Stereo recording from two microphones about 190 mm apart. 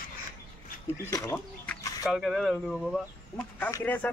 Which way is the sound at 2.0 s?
Centre (ahead or behind).